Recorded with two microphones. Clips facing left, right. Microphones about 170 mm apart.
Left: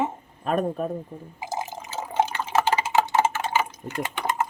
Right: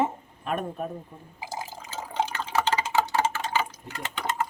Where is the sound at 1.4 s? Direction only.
20° left (ahead or behind).